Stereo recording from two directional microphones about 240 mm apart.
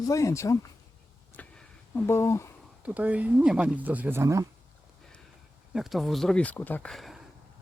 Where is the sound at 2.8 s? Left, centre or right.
Centre.